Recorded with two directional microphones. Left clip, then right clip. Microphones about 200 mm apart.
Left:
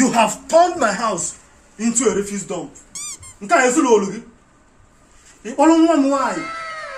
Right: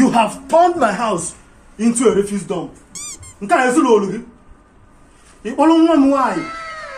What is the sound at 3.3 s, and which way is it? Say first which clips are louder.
Speech: right 1 dB; 10° left (ahead or behind).